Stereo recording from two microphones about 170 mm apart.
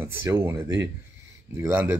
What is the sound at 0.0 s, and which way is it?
Speech, 15° right (ahead or behind).